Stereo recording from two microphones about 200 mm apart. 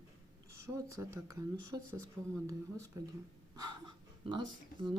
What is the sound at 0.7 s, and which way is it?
Speech, 15° right (ahead or behind).